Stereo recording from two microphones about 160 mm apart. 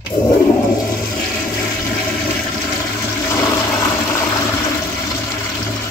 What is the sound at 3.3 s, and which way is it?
Toilet flush, 20° left (ahead or behind).